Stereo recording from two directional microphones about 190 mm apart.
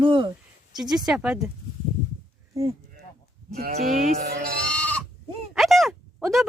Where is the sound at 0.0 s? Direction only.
25° right (ahead or behind).